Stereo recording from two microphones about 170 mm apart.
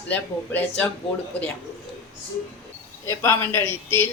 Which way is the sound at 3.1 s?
15° left (ahead or behind).